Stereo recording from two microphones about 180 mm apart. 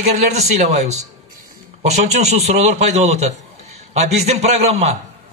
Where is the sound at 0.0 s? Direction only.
40° right (ahead or behind).